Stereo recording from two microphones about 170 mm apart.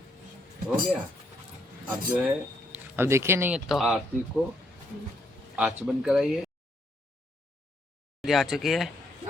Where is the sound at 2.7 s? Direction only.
15° right (ahead or behind).